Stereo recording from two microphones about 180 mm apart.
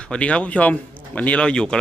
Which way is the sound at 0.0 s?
5° left (ahead or behind).